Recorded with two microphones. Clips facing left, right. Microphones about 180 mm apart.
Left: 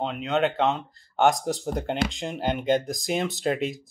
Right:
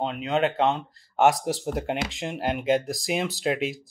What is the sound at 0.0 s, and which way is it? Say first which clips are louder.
Speech: even; centre (ahead or behind).